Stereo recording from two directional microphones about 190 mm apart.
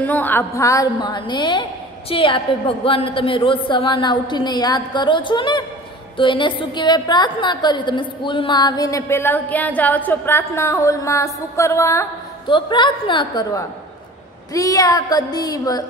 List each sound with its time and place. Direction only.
0.0 s a woman's voice: 10° left (ahead or behind)